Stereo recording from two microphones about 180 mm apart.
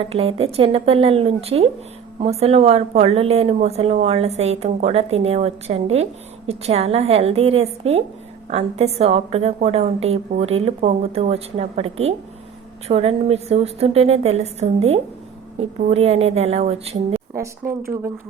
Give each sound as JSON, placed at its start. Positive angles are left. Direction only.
{"t": 0.0, "sound": "a woman's voice", "side_deg": -35}
{"t": 17.3, "sound": "speech", "side_deg": -15}